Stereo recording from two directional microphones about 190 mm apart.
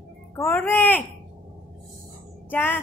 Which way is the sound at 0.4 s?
10° left (ahead or behind).